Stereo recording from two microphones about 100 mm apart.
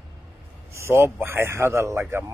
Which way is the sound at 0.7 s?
25° right (ahead or behind).